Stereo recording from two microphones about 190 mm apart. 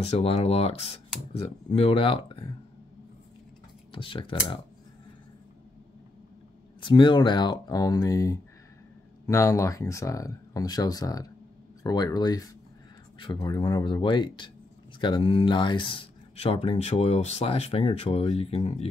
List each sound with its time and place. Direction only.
0.0 s speech: 35° left (ahead or behind)
3.9 s speech: 25° left (ahead or behind)
6.8 s speech: 25° left (ahead or behind)